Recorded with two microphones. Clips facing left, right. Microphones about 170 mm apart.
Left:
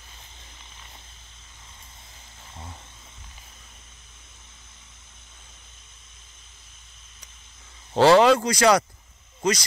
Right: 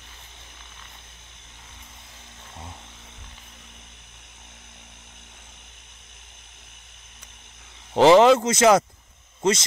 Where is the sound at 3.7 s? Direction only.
70° right (ahead or behind).